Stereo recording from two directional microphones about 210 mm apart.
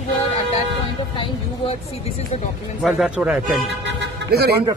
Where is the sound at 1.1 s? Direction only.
30° left (ahead or behind).